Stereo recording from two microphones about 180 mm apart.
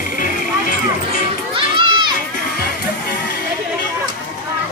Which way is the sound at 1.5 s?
25° right (ahead or behind).